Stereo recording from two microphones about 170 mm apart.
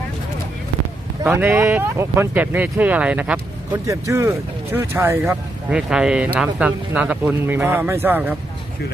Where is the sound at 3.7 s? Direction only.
20° right (ahead or behind).